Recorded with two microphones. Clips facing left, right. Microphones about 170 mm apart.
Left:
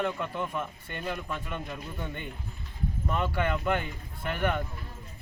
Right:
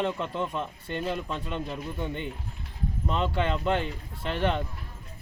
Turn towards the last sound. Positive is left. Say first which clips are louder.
# right 2 dB
turn(degrees=-25)  # may be behind; listen again after turning